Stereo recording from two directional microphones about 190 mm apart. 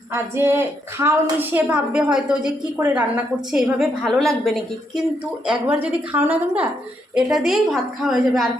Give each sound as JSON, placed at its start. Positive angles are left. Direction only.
{"t": 0.1, "sound": "a woman's voice", "side_deg": -15}